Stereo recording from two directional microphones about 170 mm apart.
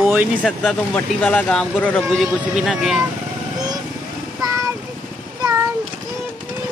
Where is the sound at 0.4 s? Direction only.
5° left (ahead or behind).